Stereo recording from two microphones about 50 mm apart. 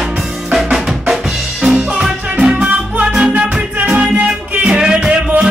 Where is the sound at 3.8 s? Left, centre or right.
Right.